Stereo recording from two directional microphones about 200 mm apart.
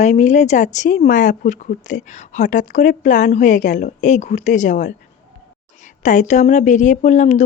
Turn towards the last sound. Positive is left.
turn(degrees=35)  # may be behind; listen again after turning